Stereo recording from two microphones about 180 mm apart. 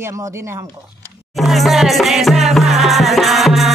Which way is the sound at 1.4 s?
Centre (ahead or behind).